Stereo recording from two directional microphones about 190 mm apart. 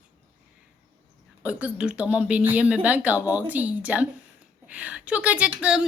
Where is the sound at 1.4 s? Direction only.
5° right (ahead or behind).